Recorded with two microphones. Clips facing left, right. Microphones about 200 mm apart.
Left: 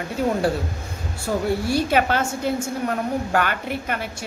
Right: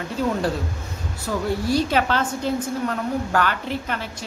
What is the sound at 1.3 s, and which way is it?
A woman's voice, 50° left (ahead or behind).